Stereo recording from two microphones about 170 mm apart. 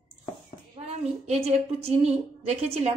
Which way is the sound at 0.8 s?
35° right (ahead or behind).